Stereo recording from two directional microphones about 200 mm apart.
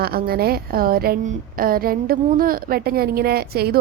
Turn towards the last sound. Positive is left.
turn(degrees=-50)  # may be behind; listen again after turning